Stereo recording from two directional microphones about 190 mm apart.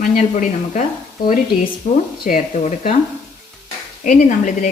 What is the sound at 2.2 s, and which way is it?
Speech, 45° left (ahead or behind).